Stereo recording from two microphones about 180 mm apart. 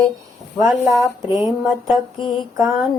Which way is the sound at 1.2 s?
25° left (ahead or behind).